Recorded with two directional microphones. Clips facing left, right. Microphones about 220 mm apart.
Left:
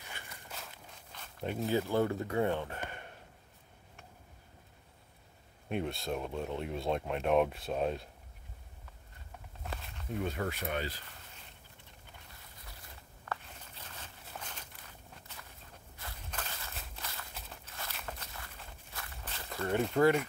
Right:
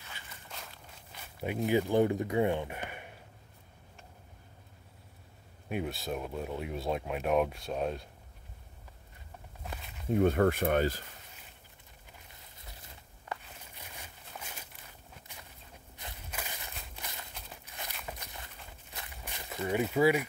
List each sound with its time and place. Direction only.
1.1 s speech: 10° right (ahead or behind)
5.7 s speech: 5° right (ahead or behind)
9.7 s walk: centre (ahead or behind)
10.1 s speech: 55° right (ahead or behind)
13.2 s walk: 15° right (ahead or behind)
16.3 s a sound: 10° right (ahead or behind)
17.0 s walk: 20° right (ahead or behind)
19.5 s speech: 5° right (ahead or behind)